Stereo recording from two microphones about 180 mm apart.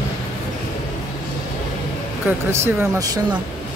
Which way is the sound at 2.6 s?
20° right (ahead or behind).